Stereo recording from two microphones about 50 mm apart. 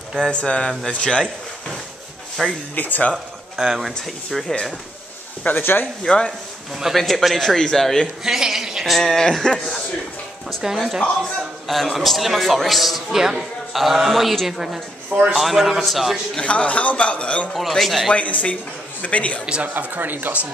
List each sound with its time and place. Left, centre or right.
0.2 s a man's voice: left
2.4 s a man's voice: centre
2.7 s speech: left
3.5 s speech: centre
4.4 s speech: centre
5.5 s speech: left
6.0 s speech: centre
6.8 s a man's voice: centre
8.2 s speech: centre
11.6 s a man's voice: centre
16.4 s a man's voice: left
17.5 s a man's voice: centre
18.1 s a man's voice: left
19.6 s speech: right